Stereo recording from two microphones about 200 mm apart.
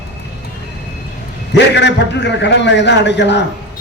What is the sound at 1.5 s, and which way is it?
A man's voice, 60° left (ahead or behind).